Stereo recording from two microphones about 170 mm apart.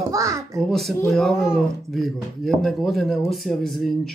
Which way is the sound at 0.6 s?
Centre (ahead or behind).